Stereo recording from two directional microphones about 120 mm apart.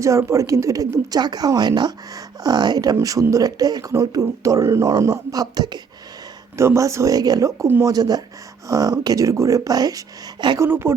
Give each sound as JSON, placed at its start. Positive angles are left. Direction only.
{"t": 0.0, "sound": "speech", "side_deg": -25}
{"t": 6.6, "sound": "speech", "side_deg": -25}
{"t": 10.6, "sound": "speech", "side_deg": -20}